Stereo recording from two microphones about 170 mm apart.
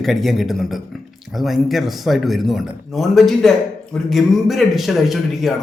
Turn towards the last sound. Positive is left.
turn(degrees=0)  # may be behind; listen again after turning